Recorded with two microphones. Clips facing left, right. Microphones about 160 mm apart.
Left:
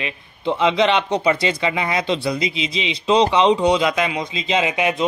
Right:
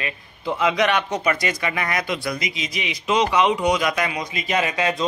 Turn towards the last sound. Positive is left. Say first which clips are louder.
# left 3 dB
turn(degrees=20)  # may be behind; listen again after turning